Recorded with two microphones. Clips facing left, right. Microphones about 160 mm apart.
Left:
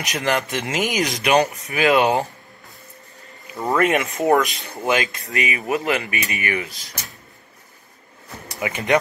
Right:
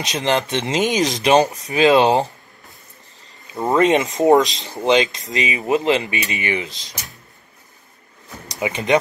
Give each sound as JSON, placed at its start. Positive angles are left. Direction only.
{"t": 0.0, "sound": "speech", "side_deg": -20}
{"t": 3.5, "sound": "speech", "side_deg": -20}
{"t": 8.5, "sound": "speech", "side_deg": -20}